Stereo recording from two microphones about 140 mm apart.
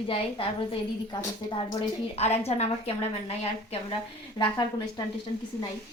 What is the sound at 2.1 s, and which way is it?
A woman's voice, 50° left (ahead or behind).